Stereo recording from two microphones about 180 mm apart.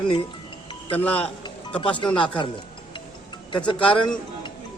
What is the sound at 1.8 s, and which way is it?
Speech, 25° left (ahead or behind).